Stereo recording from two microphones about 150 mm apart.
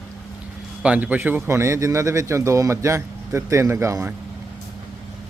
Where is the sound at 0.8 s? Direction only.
10° right (ahead or behind).